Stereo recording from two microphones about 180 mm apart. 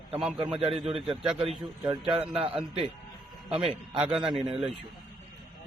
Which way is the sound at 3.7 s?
Centre (ahead or behind).